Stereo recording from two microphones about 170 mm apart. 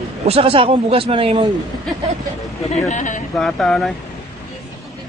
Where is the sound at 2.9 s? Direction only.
45° left (ahead or behind).